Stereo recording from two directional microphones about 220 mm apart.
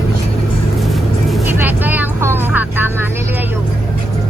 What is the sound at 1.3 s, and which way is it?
Vehicle, 10° right (ahead or behind).